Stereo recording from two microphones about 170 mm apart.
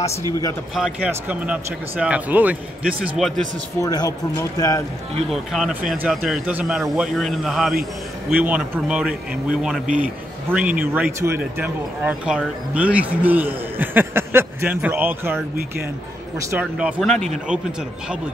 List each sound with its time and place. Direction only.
0.7 s speech: 5° right (ahead or behind)
3.8 s speech: 20° left (ahead or behind)
5.3 s speech: centre (ahead or behind)
16.3 s speech: 15° right (ahead or behind)
16.7 s speech: centre (ahead or behind)